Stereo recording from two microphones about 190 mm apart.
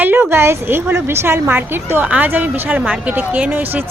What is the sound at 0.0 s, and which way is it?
A woman's voice, 10° right (ahead or behind).